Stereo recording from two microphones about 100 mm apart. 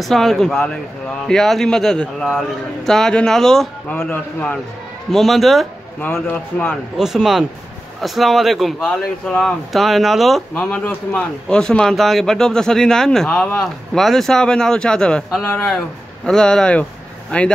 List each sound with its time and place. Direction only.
0.0 s a man's voice: 5° left (ahead or behind)
4.1 s speech: 15° left (ahead or behind)
5.1 s a man's voice: centre (ahead or behind)
6.2 s speech: 15° left (ahead or behind)
7.0 s a man's voice: 5° right (ahead or behind)
10.6 s a man's voice: 15° left (ahead or behind)
16.3 s speech: 5° left (ahead or behind)